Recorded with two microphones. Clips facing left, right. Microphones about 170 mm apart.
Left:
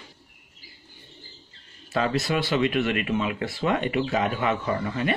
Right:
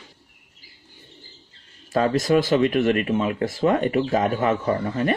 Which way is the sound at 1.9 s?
45° right (ahead or behind).